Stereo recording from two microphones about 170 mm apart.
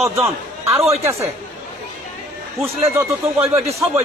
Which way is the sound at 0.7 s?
15° right (ahead or behind).